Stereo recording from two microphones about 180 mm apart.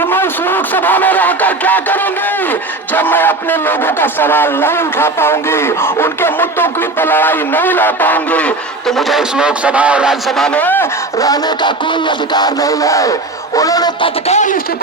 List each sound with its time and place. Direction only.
0.0 s a sound: 10° left (ahead or behind)
2.5 s a man's voice: 10° left (ahead or behind)
14.3 s speech: 45° left (ahead or behind)